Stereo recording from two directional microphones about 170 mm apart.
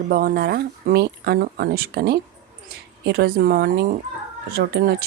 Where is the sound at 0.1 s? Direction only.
60° right (ahead or behind).